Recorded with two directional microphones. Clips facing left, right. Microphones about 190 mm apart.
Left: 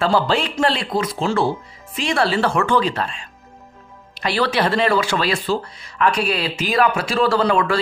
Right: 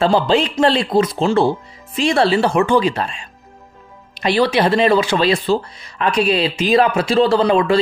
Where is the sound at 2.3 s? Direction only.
15° right (ahead or behind).